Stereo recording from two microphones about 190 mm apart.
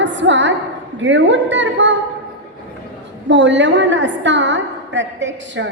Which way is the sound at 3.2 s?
70° right (ahead or behind).